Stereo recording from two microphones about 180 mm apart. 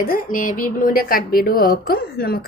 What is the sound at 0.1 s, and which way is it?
A woman's voice, 50° left (ahead or behind).